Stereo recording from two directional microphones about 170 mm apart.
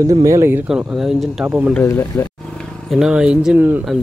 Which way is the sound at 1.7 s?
10° left (ahead or behind).